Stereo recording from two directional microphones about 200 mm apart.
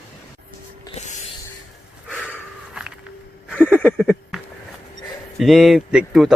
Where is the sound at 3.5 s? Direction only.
5° left (ahead or behind).